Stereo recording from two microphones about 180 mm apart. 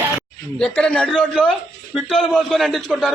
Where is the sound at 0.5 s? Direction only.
5° left (ahead or behind).